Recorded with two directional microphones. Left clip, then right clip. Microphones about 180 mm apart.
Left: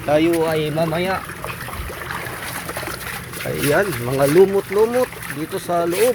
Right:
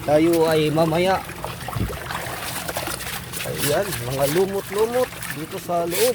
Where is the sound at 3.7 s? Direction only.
15° left (ahead or behind).